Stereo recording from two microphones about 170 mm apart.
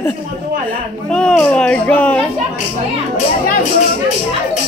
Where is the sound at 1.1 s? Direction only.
5° left (ahead or behind).